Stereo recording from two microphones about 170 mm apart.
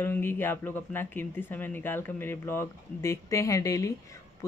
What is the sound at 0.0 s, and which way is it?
Speech, 15° left (ahead or behind).